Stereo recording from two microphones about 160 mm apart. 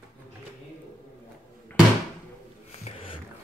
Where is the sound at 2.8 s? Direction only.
35° left (ahead or behind).